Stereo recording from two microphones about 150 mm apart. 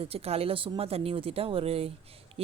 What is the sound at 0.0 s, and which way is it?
Speech, 40° right (ahead or behind).